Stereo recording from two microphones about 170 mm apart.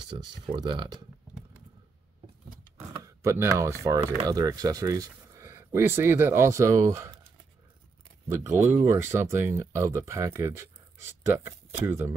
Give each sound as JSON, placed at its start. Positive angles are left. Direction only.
{"t": 0.0, "sound": "speech", "side_deg": -25}
{"t": 3.0, "sound": "speech", "side_deg": -15}
{"t": 8.3, "sound": "speech", "side_deg": -15}